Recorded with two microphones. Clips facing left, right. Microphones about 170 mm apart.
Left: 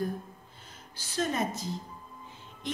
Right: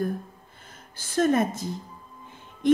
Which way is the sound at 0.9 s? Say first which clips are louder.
Right 9 dB; 50° right (ahead or behind).